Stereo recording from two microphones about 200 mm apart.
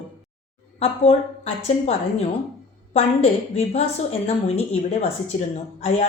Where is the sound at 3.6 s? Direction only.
30° left (ahead or behind).